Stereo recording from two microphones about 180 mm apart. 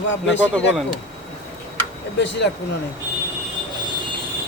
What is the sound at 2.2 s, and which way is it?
Speech, 75° left (ahead or behind).